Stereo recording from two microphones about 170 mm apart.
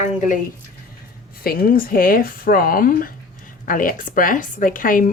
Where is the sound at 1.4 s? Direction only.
60° left (ahead or behind).